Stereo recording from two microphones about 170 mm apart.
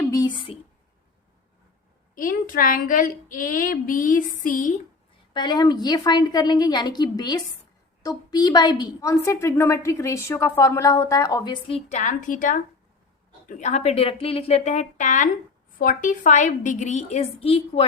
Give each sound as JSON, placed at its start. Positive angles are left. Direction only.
{"t": 0.1, "sound": "a sound", "side_deg": 25}
{"t": 2.1, "sound": "speech", "side_deg": 55}
{"t": 5.3, "sound": "a woman's voice", "side_deg": 25}
{"t": 11.9, "sound": "a woman's voice", "side_deg": 45}